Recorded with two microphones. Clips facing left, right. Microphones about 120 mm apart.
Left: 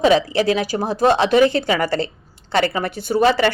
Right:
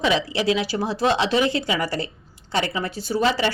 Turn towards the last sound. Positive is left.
turn(degrees=55)  # may be behind; listen again after turning